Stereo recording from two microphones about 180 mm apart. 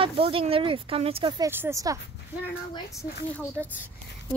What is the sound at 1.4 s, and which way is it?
Speech, 15° right (ahead or behind).